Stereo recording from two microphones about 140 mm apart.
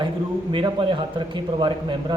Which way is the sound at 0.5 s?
35° right (ahead or behind).